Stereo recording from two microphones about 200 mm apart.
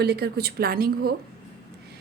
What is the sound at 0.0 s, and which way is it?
A woman's voice, 50° right (ahead or behind).